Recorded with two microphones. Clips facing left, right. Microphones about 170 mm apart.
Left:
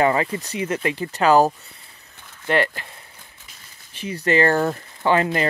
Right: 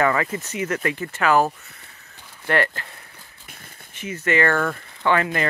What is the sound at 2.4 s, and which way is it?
Speech, 20° left (ahead or behind).